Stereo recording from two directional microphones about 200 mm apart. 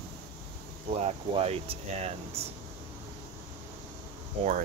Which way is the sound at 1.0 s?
30° right (ahead or behind).